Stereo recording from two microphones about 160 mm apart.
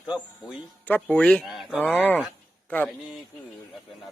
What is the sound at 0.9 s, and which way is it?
Speech, 10° left (ahead or behind).